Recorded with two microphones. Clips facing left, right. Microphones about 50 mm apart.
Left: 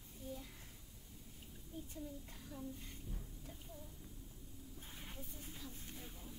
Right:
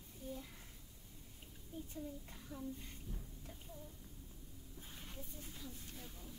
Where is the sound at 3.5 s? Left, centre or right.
Centre.